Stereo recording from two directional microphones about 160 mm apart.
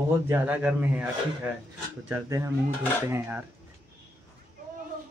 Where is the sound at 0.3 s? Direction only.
10° right (ahead or behind).